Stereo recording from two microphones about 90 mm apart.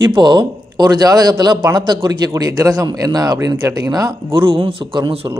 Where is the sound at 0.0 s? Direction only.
55° right (ahead or behind).